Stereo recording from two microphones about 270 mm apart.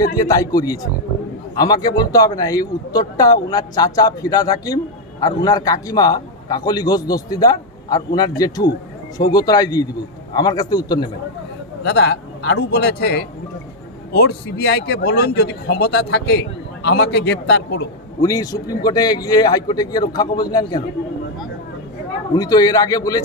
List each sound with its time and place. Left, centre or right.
0.2 s a man's voice: centre
11.8 s a man's voice: left
18.2 s a man's voice: centre
22.3 s a man's voice: centre